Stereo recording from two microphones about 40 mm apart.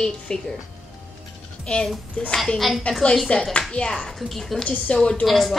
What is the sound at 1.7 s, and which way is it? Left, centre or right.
Speech, left.